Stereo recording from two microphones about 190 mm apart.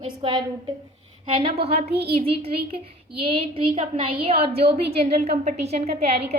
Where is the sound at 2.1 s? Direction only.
30° right (ahead or behind).